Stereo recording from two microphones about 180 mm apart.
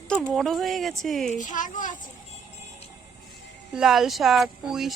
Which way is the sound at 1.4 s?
45° left (ahead or behind).